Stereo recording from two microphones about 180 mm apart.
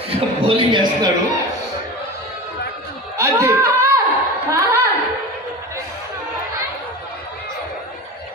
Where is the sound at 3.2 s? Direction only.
15° right (ahead or behind).